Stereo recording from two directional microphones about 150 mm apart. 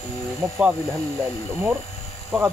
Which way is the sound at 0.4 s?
15° right (ahead or behind).